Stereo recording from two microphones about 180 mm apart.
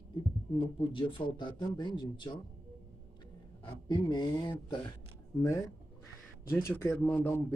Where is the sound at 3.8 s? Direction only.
25° left (ahead or behind); by 7.4 s 10° left (ahead or behind).